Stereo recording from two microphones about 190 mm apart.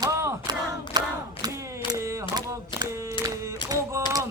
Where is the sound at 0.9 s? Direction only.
20° right (ahead or behind).